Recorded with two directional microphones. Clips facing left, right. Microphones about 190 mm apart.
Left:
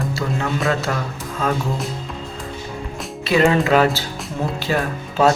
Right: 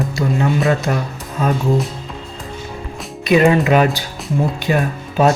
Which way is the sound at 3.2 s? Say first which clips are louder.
Right 3 dB; 15° right (ahead or behind).